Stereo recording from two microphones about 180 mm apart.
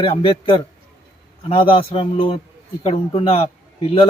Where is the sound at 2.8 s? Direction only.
30° left (ahead or behind).